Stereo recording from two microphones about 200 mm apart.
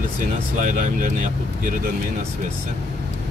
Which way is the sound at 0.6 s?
40° right (ahead or behind).